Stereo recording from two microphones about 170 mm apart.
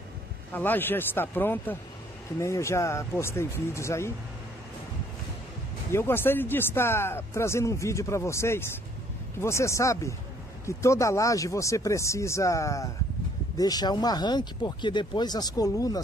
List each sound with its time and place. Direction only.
0.5 s speech: 10° left (ahead or behind)
5.9 s speech: 15° left (ahead or behind)